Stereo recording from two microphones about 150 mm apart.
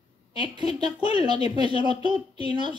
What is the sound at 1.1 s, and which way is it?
Speech, 30° right (ahead or behind).